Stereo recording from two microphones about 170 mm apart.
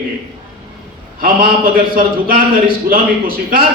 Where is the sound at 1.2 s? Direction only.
60° right (ahead or behind).